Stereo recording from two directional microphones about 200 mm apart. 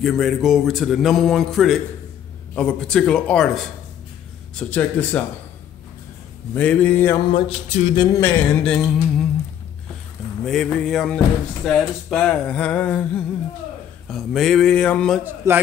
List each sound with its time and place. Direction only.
0.0 s speech: centre (ahead or behind)
4.6 s music: 10° left (ahead or behind)
6.5 s music: 5° left (ahead or behind)
7.3 s a sound: 30° left (ahead or behind)
8.0 s music: 15° left (ahead or behind)
10.4 s speech: centre (ahead or behind)
15.2 s a man's voice: 10° right (ahead or behind)